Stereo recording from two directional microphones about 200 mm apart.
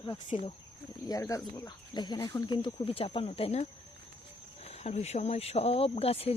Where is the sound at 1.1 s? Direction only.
15° left (ahead or behind).